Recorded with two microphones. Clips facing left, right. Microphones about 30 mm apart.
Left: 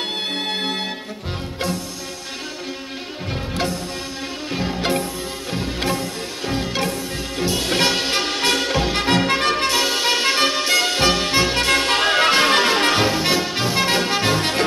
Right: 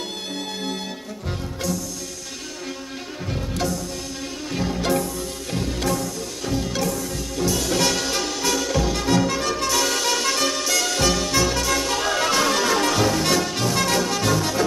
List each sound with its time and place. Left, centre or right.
0.0 s music: left
4.5 s music: left